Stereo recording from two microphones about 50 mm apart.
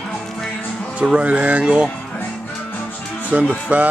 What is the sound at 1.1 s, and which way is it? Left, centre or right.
Speech, right.